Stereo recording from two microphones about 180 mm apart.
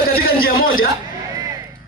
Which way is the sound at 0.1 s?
55° left (ahead or behind).